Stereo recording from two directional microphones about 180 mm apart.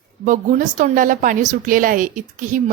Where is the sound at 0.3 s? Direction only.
45° right (ahead or behind).